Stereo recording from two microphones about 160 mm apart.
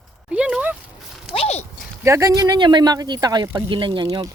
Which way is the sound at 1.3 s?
40° left (ahead or behind).